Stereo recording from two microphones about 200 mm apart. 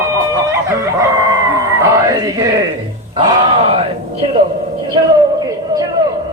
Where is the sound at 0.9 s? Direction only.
20° right (ahead or behind).